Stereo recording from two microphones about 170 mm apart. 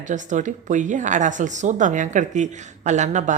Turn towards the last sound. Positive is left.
turn(degrees=-45)  # may be behind; listen again after turning